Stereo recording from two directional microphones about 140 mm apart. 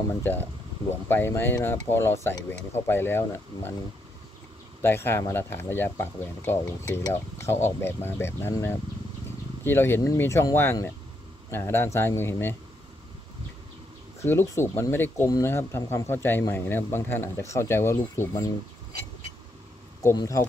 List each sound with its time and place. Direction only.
0.1 s speech: 15° left (ahead or behind)
4.8 s speech: 15° left (ahead or behind)
14.2 s speech: 20° left (ahead or behind)
20.0 s speech: 20° left (ahead or behind)